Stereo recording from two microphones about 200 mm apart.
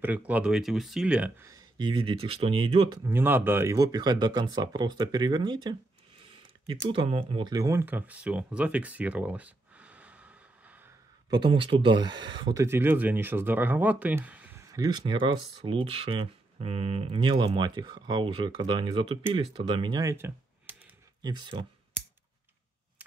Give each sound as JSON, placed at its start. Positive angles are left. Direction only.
{"t": 0.0, "sound": "speech", "side_deg": -5}
{"t": 1.5, "sound": "speech", "side_deg": -20}
{"t": 3.1, "sound": "speech", "side_deg": -10}
{"t": 6.9, "sound": "speech", "side_deg": -25}
{"t": 11.2, "sound": "speech", "side_deg": -25}
{"t": 21.2, "sound": "speech", "side_deg": -20}